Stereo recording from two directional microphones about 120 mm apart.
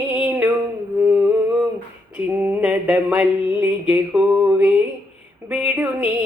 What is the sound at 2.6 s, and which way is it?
Music, 10° right (ahead or behind).